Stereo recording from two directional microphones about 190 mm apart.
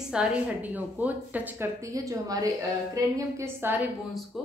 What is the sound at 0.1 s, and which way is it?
A woman's voice, 5° right (ahead or behind).